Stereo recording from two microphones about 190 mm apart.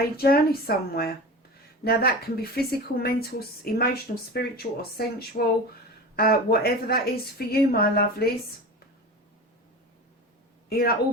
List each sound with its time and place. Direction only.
0.2 s a woman's voice: 55° left (ahead or behind)
10.7 s speech: 55° left (ahead or behind)